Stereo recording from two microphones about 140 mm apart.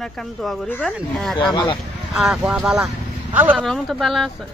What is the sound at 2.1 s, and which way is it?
Speech, 5° right (ahead or behind).